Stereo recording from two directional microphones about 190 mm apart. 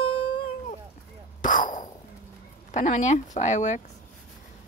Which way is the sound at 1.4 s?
45° left (ahead or behind).